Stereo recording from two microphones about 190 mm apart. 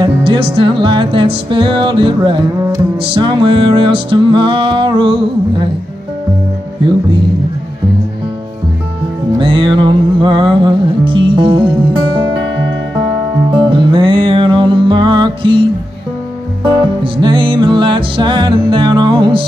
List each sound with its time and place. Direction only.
0.0 s music: 25° right (ahead or behind)
9.4 s music: 25° right (ahead or behind)
13.6 s music: 25° right (ahead or behind)
16.6 s music: 25° right (ahead or behind)